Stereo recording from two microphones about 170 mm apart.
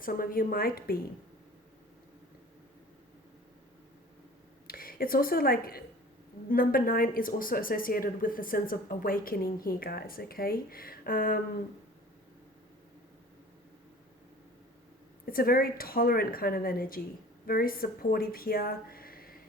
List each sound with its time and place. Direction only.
0.0 s speech: 55° left (ahead or behind)
4.6 s speech: 60° left (ahead or behind)
15.3 s speech: 60° left (ahead or behind)